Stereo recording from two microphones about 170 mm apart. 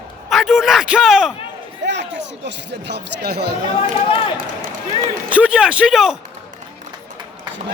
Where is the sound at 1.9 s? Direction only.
90° right; by 3.5 s 70° right (ahead or behind).